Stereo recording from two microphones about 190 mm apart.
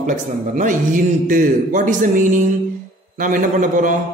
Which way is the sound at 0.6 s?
45° right (ahead or behind).